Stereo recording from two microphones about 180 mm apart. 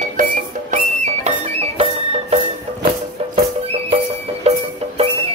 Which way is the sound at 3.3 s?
30° right (ahead or behind).